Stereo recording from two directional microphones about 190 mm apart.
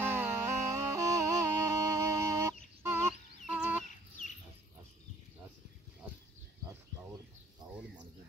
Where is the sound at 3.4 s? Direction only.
5° right (ahead or behind).